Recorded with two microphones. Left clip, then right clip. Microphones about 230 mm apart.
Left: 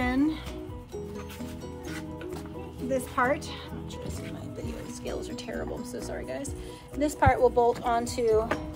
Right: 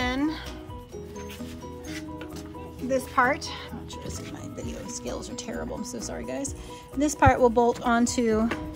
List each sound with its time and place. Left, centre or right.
0.0 s music: right
2.9 s speech: right
5.0 s speech: right